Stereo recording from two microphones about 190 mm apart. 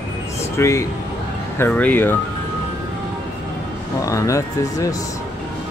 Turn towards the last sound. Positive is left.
turn(degrees=15)  # may be behind; listen again after turning